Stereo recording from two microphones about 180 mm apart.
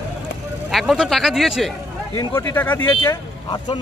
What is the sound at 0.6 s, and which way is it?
Speech, centre (ahead or behind).